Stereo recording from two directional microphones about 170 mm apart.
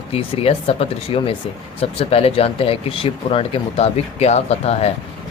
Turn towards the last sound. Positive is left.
turn(degrees=40)  # may be behind; listen again after turning